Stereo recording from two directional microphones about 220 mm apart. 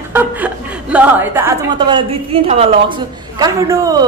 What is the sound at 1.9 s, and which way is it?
Speech, 25° right (ahead or behind).